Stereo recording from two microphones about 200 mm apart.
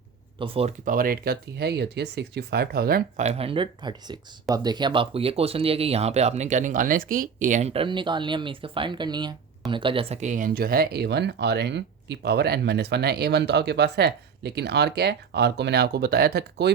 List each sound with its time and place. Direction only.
0.3 s speech: 30° right (ahead or behind)
0.9 s speech: 45° right (ahead or behind)
3.2 s speech: 30° right (ahead or behind); by 16.7 s 55° right (ahead or behind)